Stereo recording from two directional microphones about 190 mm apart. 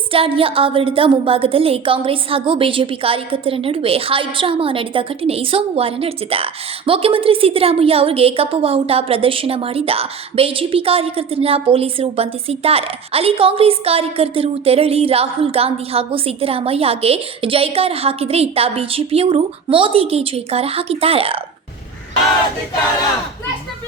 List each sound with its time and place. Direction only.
0.1 s a woman's voice: 30° right (ahead or behind)